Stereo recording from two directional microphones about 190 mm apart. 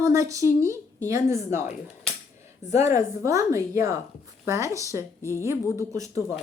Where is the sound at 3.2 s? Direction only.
15° right (ahead or behind).